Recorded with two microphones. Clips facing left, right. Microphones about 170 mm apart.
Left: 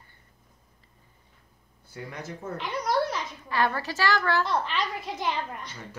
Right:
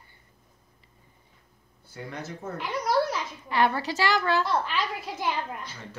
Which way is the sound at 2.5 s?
5° right (ahead or behind).